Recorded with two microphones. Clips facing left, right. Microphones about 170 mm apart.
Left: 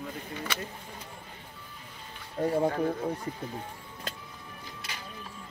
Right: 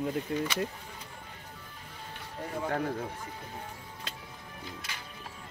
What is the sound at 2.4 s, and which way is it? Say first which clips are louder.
Speech: left 12 dB; 45° left (ahead or behind).